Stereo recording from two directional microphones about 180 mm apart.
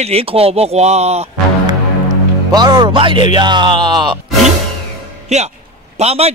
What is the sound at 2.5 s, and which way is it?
Speech, 20° right (ahead or behind).